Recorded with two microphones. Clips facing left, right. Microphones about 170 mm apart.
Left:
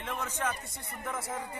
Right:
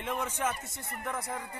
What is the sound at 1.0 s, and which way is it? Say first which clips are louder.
Speech: even; centre (ahead or behind).